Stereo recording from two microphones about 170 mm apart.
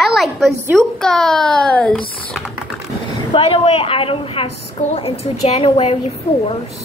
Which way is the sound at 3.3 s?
35° left (ahead or behind).